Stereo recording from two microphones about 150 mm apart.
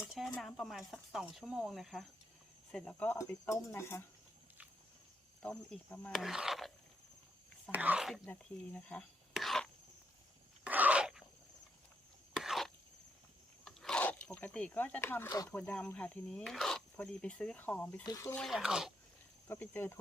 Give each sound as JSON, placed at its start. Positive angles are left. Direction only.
{"t": 0.0, "sound": "speech", "side_deg": -5}
{"t": 5.4, "sound": "speech", "side_deg": 10}
{"t": 6.1, "sound": "speech", "side_deg": -5}
{"t": 7.7, "sound": "speech", "side_deg": -10}
{"t": 8.2, "sound": "speech", "side_deg": 10}
{"t": 10.7, "sound": "a sound", "side_deg": -10}
{"t": 12.3, "sound": "a sound", "side_deg": 0}
{"t": 13.7, "sound": "speech", "side_deg": 5}
{"t": 18.0, "sound": "speech", "side_deg": 20}
{"t": 18.3, "sound": "speech", "side_deg": 0}
{"t": 19.5, "sound": "speech", "side_deg": 15}